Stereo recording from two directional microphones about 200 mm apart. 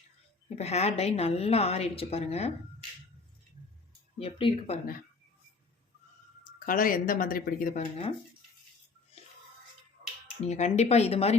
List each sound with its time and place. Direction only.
0.5 s a woman's voice: 30° left (ahead or behind)
4.2 s speech: 25° left (ahead or behind)
6.7 s speech: 45° left (ahead or behind)
10.4 s a woman's voice: 35° left (ahead or behind)